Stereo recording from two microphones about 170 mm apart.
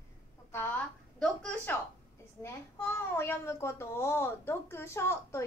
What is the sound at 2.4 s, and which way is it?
A child's voice, 15° left (ahead or behind).